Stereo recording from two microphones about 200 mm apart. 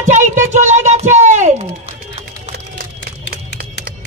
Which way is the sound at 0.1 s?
35° right (ahead or behind).